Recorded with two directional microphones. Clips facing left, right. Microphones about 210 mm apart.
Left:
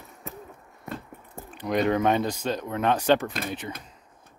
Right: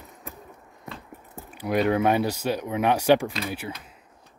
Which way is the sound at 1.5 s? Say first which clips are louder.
Right 1 dB; 5° right (ahead or behind).